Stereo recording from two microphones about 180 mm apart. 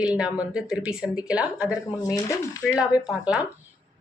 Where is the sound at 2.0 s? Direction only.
20° left (ahead or behind).